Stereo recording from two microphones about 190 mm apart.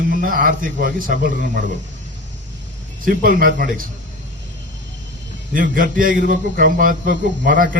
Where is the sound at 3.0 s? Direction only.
45° right (ahead or behind).